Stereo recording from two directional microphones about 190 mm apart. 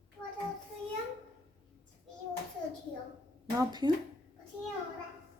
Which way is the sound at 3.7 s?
25° right (ahead or behind).